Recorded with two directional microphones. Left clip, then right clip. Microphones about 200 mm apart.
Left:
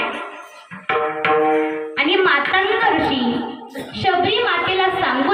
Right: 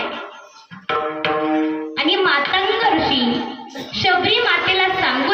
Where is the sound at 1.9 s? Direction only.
10° right (ahead or behind).